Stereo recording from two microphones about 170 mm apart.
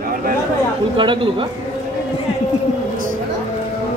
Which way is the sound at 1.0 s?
30° right (ahead or behind).